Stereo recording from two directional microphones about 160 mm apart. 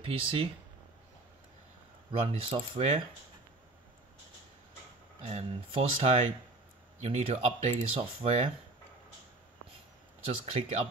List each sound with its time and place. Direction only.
0.0 s speech: 35° right (ahead or behind)
2.1 s speech: 35° right (ahead or behind)
5.2 s speech: 40° right (ahead or behind)
10.4 s speech: 40° right (ahead or behind)